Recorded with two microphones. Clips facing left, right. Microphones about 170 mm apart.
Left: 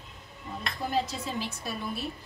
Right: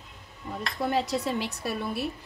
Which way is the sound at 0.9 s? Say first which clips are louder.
Right 4 dB; 70° right (ahead or behind).